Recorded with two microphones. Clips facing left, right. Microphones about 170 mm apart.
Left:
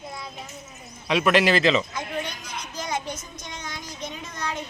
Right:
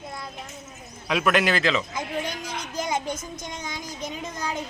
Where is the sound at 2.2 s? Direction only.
90° right.